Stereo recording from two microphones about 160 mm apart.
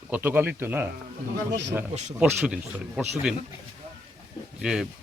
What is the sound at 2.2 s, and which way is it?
Speech, 5° right (ahead or behind).